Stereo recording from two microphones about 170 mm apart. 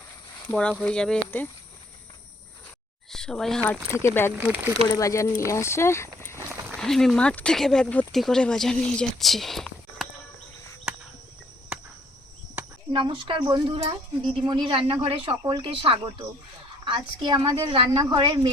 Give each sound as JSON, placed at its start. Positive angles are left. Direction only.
{"t": 0.5, "sound": "speech", "side_deg": 5}
{"t": 3.1, "sound": "speech", "side_deg": 5}
{"t": 4.4, "sound": "speech", "side_deg": -10}
{"t": 4.9, "sound": "speech", "side_deg": 20}
{"t": 6.7, "sound": "speech", "side_deg": 0}
{"t": 10.9, "sound": "cricket", "side_deg": -5}
{"t": 12.9, "sound": "speech", "side_deg": -30}